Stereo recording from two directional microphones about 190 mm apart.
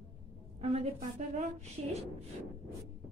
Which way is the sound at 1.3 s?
40° right (ahead or behind).